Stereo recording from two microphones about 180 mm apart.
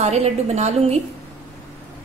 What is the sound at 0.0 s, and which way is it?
Speech, 35° right (ahead or behind).